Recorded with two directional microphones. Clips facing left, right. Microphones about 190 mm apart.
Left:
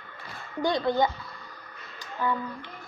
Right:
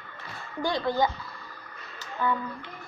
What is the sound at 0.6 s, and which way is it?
Speech, 20° left (ahead or behind).